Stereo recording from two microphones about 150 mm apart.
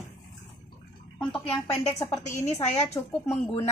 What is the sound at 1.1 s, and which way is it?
Speech, 10° left (ahead or behind).